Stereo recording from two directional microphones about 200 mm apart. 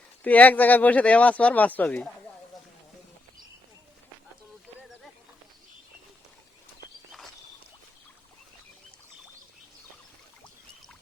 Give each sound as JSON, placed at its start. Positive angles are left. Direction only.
{"t": 0.2, "sound": "speech", "side_deg": 5}